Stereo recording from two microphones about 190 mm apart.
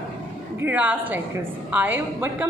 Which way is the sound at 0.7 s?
10° right (ahead or behind).